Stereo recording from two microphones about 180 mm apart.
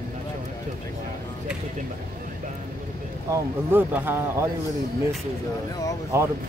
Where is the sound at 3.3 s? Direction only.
10° right (ahead or behind).